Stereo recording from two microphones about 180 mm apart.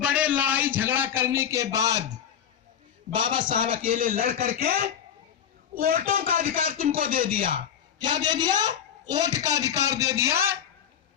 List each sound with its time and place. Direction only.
0.0 s a sound: 5° right (ahead or behind)
3.1 s a woman's voice: 30° right (ahead or behind)
3.6 s speech: 50° right (ahead or behind)
7.3 s a woman's voice: 30° right (ahead or behind)